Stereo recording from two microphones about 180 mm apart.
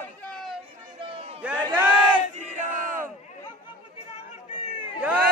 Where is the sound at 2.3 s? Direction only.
45° right (ahead or behind).